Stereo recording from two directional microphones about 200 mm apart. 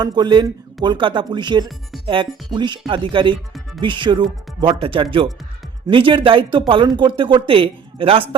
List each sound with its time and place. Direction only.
0.0 s speech: 20° right (ahead or behind)